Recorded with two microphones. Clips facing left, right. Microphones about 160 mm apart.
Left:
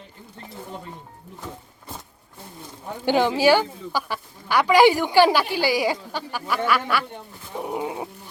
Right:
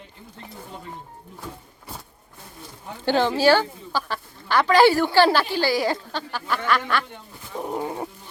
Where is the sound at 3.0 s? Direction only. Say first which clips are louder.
Left 1 dB; 15° left (ahead or behind).